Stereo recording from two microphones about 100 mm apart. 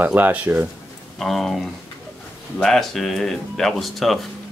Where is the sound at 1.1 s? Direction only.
Centre (ahead or behind).